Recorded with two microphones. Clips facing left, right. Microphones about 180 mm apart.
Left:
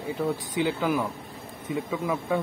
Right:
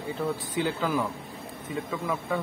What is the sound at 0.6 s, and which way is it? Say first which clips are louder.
Speech: left 2 dB; 15° left (ahead or behind).